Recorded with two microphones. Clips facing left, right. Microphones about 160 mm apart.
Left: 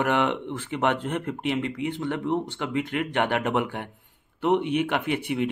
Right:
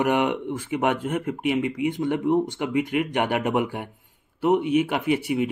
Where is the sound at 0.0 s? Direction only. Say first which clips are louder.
Right 2 dB; 10° right (ahead or behind).